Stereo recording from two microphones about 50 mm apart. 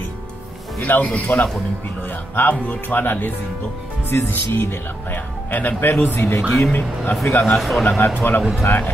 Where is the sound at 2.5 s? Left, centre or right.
Left.